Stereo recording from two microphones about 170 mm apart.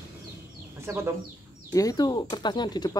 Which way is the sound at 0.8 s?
15° right (ahead or behind).